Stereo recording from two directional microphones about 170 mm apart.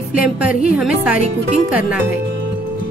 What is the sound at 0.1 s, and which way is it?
A woman's voice, 5° right (ahead or behind).